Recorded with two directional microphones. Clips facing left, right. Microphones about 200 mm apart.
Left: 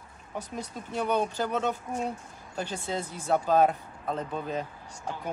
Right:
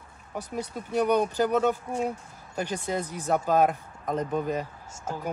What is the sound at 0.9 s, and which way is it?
Speech, 15° right (ahead or behind).